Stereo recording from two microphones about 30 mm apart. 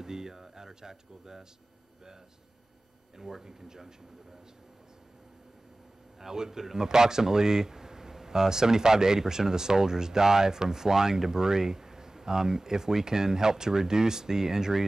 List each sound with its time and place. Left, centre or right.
0.0 s speech: centre
3.2 s a man's voice: centre
6.2 s speech: centre